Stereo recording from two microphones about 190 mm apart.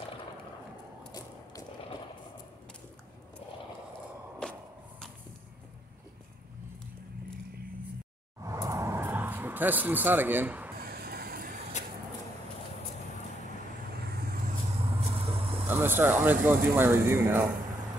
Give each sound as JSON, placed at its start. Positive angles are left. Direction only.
{"t": 4.4, "sound": "a sound", "side_deg": 5}
{"t": 8.5, "sound": "a sound", "side_deg": -15}
{"t": 10.8, "sound": "vehicle", "side_deg": -55}
{"t": 13.9, "sound": "vehicle", "side_deg": -55}
{"t": 14.7, "sound": "vehicle", "side_deg": -35}
{"t": 15.7, "sound": "speech", "side_deg": -10}